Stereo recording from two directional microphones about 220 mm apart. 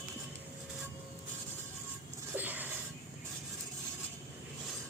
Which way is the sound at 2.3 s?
10° right (ahead or behind).